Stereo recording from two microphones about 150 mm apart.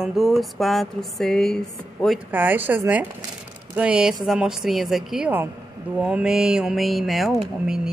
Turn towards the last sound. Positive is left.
turn(degrees=-5)  # may be behind; listen again after turning